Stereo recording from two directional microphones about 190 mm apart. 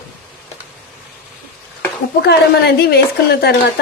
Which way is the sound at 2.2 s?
60° left (ahead or behind).